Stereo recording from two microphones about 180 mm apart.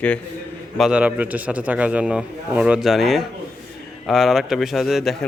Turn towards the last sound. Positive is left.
turn(degrees=0)  # may be behind; listen again after turning